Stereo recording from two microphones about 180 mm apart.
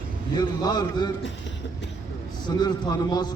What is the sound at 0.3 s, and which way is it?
Speech, 25° left (ahead or behind).